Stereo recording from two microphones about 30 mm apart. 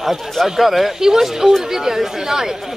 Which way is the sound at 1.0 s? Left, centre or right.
Centre.